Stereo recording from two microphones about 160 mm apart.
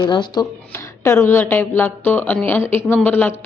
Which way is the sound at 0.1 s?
30° left (ahead or behind).